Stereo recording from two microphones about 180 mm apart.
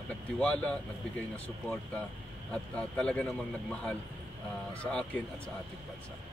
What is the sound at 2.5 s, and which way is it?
A man's voice, 5° left (ahead or behind).